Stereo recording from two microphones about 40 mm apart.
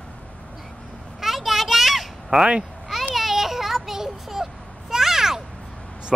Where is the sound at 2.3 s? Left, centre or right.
Right.